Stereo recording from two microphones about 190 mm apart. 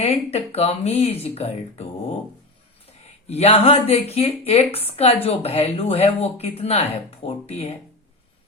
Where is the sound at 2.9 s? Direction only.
35° left (ahead or behind).